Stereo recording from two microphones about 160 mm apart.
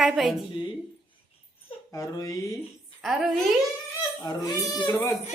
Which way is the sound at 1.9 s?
20° left (ahead or behind).